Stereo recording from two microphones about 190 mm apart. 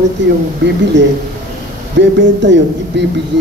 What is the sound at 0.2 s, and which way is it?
Speech, 70° right (ahead or behind).